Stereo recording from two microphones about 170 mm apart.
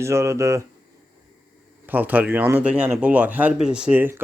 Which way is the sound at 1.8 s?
10° right (ahead or behind).